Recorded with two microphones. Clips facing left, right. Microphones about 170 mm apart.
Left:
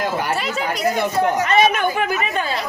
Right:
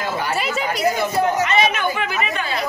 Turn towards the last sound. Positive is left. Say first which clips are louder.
# left 3 dB
turn(degrees=45)  # may be behind; listen again after turning